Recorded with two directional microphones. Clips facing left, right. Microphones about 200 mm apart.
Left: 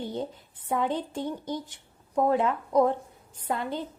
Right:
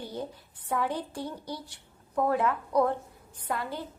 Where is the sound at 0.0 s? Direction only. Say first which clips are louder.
Left 4 dB; 25° left (ahead or behind).